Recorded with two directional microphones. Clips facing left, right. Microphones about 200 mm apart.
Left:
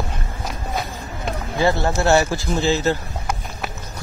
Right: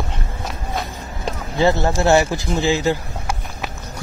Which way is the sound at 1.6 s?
20° right (ahead or behind).